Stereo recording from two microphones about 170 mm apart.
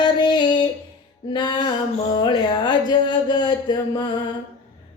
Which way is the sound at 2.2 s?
25° left (ahead or behind).